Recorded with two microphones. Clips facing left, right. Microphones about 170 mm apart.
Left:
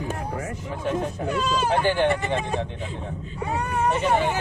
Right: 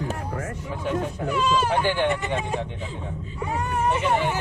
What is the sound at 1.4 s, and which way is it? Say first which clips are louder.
Speech: even; 40° left (ahead or behind).